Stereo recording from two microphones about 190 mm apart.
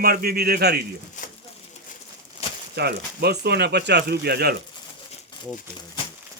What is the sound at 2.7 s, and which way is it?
Speech, 60° right (ahead or behind).